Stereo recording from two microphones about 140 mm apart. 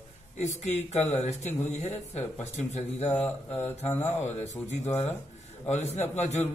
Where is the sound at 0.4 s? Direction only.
55° left (ahead or behind).